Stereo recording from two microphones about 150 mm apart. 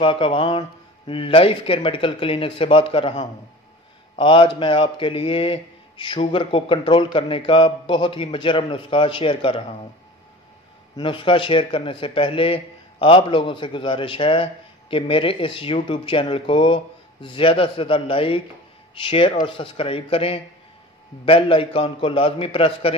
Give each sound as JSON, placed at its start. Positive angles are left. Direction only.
{"t": 0.0, "sound": "speech", "side_deg": 35}
{"t": 11.0, "sound": "speech", "side_deg": 35}